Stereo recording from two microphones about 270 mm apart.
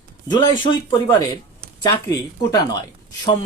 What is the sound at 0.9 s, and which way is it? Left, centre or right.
Speech, centre.